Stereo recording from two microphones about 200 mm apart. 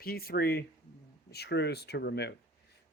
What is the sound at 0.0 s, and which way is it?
Speech, 50° left (ahead or behind).